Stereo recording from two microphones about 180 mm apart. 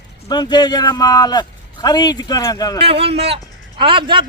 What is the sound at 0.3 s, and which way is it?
A man's voice, 25° left (ahead or behind).